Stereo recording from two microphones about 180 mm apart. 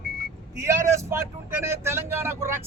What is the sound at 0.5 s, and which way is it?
Speech, 15° right (ahead or behind).